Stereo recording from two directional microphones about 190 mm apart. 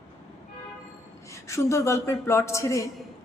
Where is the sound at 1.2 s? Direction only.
15° left (ahead or behind).